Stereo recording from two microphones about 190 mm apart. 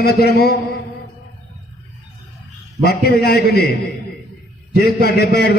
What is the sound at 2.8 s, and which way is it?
Speech, 60° left (ahead or behind).